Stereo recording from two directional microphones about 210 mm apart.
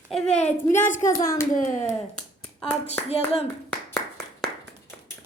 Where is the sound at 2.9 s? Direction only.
30° left (ahead or behind).